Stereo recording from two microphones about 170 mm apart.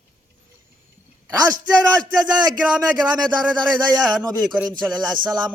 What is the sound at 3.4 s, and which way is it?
A man's voice, centre (ahead or behind).